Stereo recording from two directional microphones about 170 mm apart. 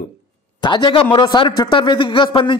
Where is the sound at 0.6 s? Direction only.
25° left (ahead or behind).